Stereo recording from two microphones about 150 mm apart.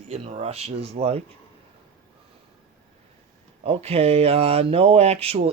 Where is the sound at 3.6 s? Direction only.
40° right (ahead or behind).